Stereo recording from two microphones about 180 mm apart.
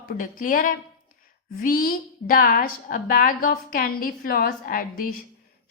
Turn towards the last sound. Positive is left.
turn(degrees=50)  # may be behind; listen again after turning